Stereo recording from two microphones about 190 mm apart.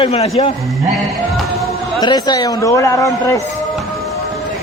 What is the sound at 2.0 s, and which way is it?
A man's voice, 20° left (ahead or behind).